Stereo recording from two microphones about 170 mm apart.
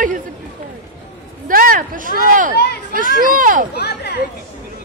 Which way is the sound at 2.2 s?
50° right (ahead or behind).